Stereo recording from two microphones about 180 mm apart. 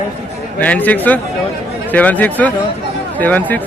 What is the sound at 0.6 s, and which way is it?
A man's voice, 10° left (ahead or behind).